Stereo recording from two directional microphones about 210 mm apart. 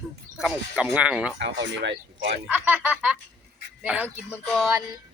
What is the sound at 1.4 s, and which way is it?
Speech, 60° right (ahead or behind).